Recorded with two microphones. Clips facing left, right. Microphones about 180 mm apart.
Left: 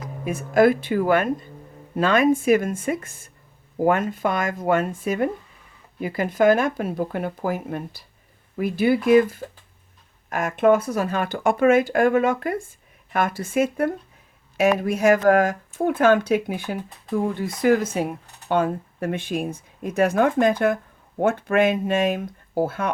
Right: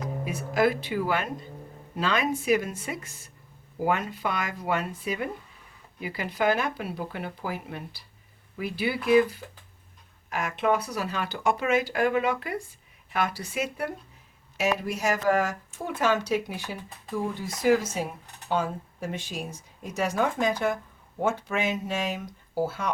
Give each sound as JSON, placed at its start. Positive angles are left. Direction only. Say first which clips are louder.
{"t": 0.3, "sound": "speech", "louder": "left 8 dB", "side_deg": 50}